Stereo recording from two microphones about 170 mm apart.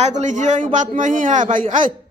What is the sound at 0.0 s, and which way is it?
Speech, 45° right (ahead or behind).